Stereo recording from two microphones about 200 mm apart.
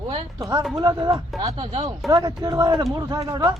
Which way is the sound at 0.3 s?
15° right (ahead or behind).